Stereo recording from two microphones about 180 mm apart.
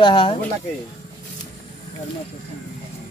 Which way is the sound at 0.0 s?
30° left (ahead or behind).